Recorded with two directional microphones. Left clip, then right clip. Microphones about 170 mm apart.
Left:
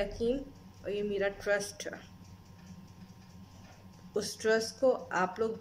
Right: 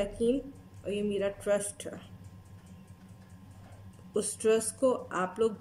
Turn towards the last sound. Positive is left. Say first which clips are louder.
# even
turn(degrees=-20)  # may be behind; listen again after turning